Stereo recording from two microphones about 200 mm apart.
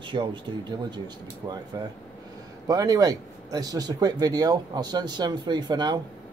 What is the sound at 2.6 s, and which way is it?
Speech, 20° right (ahead or behind).